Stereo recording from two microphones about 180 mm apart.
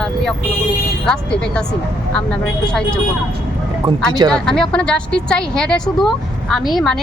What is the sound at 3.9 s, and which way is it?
Speech, 25° right (ahead or behind).